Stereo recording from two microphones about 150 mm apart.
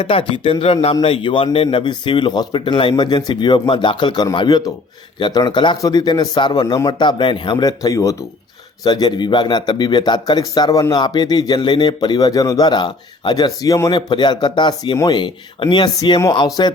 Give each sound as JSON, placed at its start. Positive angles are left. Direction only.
{"t": 0.0, "sound": "a man's voice", "side_deg": 35}